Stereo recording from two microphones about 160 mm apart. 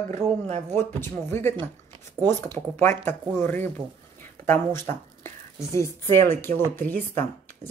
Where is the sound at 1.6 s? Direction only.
25° right (ahead or behind).